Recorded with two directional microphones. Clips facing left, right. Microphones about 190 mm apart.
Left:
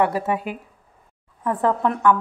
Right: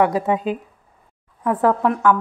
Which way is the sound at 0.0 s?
20° right (ahead or behind).